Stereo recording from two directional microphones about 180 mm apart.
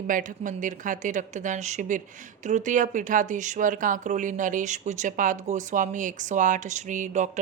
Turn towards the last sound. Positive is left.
turn(degrees=-45)  # may be behind; listen again after turning